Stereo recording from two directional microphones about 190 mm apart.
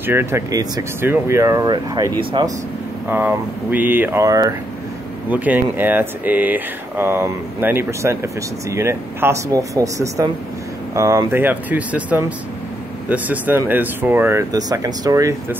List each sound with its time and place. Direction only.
0.0 s speech: 10° right (ahead or behind)
3.1 s speech: 10° right (ahead or behind)